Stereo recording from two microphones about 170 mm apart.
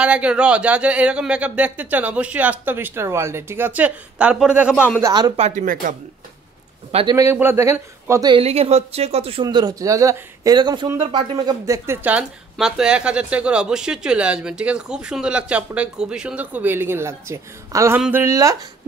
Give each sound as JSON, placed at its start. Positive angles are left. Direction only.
{"t": 0.0, "sound": "speech", "side_deg": -5}
{"t": 5.0, "sound": "speech", "side_deg": -25}
{"t": 5.4, "sound": "speech", "side_deg": -45}
{"t": 6.9, "sound": "a man's voice", "side_deg": -35}
{"t": 7.2, "sound": "speech", "side_deg": -15}
{"t": 8.4, "sound": "speech", "side_deg": -35}